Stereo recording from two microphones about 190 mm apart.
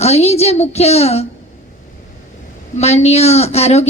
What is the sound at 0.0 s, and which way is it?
A woman's voice, 35° left (ahead or behind).